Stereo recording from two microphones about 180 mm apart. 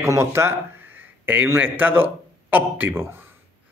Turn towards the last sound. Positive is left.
turn(degrees=-10)  # may be behind; listen again after turning